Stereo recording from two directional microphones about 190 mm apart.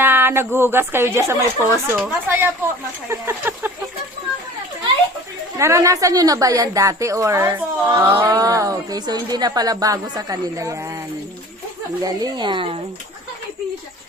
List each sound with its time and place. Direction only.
0.0 s a woman's voice: 10° right (ahead or behind)
5.5 s a woman's voice: 15° right (ahead or behind)
12.0 s speech: 20° right (ahead or behind)